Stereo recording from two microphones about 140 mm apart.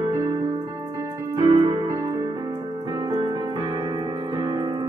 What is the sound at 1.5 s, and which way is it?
Keyboard, 25° right (ahead or behind).